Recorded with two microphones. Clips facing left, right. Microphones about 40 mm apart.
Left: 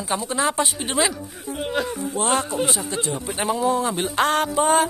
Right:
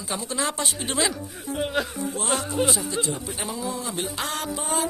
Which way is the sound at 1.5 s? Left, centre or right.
Centre.